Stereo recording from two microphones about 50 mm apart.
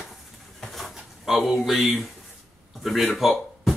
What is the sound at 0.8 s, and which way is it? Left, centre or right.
Speech, centre.